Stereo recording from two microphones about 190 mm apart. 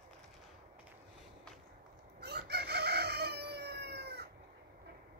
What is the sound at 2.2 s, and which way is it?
Chicken, 60° right (ahead or behind).